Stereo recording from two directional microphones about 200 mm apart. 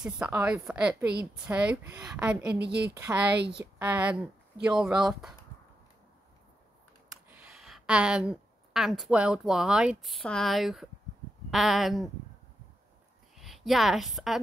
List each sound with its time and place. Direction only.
0.0 s a woman's voice: 5° right (ahead or behind)
2.6 s a woman's voice: 55° right (ahead or behind)
2.9 s a woman's voice: 10° right (ahead or behind)
7.2 s a woman's voice: 5° right (ahead or behind)
13.4 s a woman's voice: centre (ahead or behind)